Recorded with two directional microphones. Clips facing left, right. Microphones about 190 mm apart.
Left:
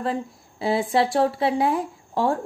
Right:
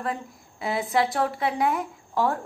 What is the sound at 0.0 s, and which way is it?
Speech, 30° left (ahead or behind).